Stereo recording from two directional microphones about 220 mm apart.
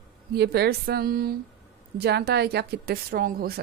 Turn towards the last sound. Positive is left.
turn(degrees=-40)  # may be behind; listen again after turning